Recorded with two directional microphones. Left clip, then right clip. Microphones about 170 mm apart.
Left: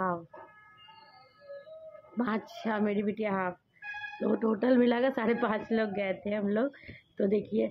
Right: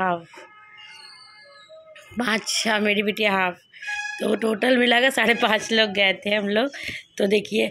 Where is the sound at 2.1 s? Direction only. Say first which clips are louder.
Right 11 dB; 15° right (ahead or behind).